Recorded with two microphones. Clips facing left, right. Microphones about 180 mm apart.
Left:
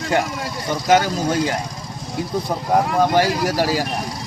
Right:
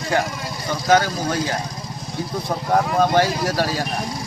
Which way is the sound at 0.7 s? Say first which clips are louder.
Left 1 dB; 20° left (ahead or behind).